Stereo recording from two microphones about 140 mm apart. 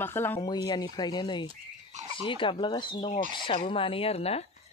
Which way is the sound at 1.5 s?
55° right (ahead or behind).